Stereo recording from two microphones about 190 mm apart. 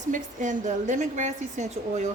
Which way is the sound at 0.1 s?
40° right (ahead or behind).